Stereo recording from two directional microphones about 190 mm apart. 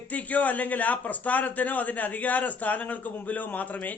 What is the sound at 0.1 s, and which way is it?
A man's voice, 10° left (ahead or behind).